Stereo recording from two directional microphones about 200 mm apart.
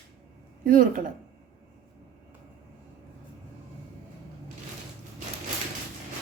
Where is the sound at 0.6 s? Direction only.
45° right (ahead or behind).